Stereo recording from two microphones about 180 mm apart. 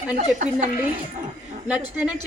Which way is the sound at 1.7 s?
5° right (ahead or behind).